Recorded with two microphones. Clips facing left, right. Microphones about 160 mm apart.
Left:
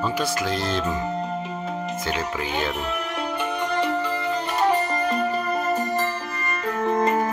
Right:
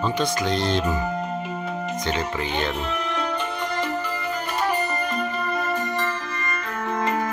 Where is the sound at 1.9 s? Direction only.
5° left (ahead or behind); by 7.3 s 35° left (ahead or behind).